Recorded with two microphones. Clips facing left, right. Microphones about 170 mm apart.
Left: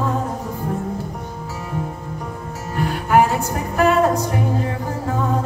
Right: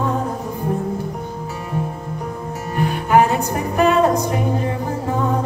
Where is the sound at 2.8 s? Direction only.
20° right (ahead or behind).